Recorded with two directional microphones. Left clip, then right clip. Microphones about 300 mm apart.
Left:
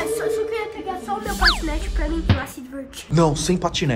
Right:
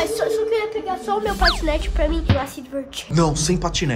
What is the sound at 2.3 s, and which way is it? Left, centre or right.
Speech, centre.